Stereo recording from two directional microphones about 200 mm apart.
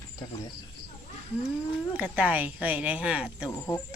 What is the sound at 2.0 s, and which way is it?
A woman's voice, 5° right (ahead or behind).